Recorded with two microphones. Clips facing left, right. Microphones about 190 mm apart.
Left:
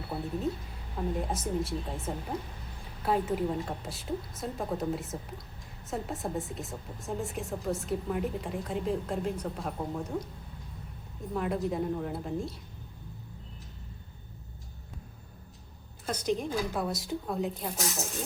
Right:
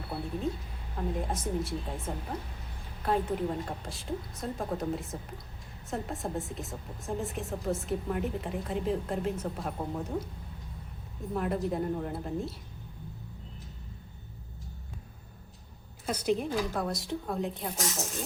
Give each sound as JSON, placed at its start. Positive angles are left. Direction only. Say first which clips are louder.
{"t": 0.1, "sound": "a woman's voice", "louder": "left 1 dB", "side_deg": 5}
{"t": 11.3, "sound": "a woman's voice", "louder": "even", "side_deg": 0}
{"t": 16.0, "sound": "a woman's voice", "louder": "right 1 dB", "side_deg": -5}